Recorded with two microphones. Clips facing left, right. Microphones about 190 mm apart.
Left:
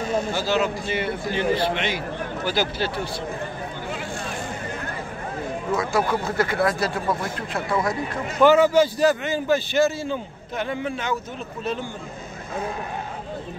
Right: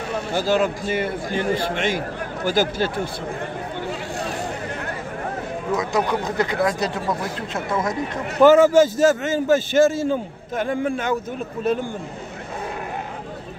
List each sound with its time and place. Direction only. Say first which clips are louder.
0.1 s a man's voice: right 3 dB; 50° right (ahead or behind)
5.8 s speech: right 1 dB; 20° right (ahead or behind)
8.4 s a man's voice: right 3 dB; 45° right (ahead or behind)